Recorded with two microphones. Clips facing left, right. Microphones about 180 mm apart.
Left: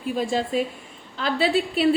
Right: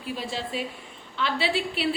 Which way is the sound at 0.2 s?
45° left (ahead or behind).